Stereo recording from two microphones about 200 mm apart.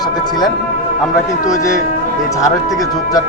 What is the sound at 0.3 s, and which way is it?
A man's voice, 20° left (ahead or behind).